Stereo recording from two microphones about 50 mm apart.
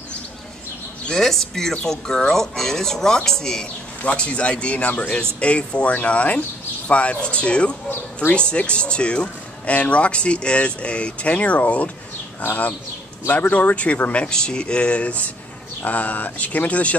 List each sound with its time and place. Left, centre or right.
1.0 s speech: centre
4.0 s speech: left
7.9 s speech: left
8.4 s speech: left
13.3 s speech: left